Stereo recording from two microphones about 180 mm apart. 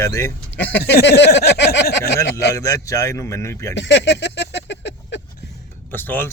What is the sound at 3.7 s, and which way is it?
Speech, 85° left.